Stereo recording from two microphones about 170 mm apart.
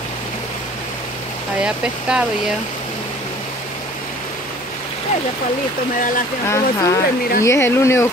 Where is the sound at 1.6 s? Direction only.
5° right (ahead or behind).